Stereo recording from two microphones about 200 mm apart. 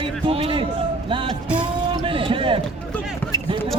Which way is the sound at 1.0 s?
25° right (ahead or behind).